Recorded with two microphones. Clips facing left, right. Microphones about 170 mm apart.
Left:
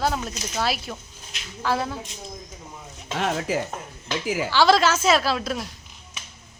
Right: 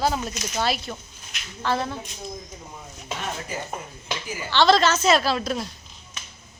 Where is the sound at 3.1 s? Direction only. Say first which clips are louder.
Left 9 dB; 80° left.